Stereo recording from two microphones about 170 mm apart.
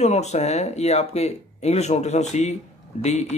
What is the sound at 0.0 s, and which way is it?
Speech, 40° left (ahead or behind).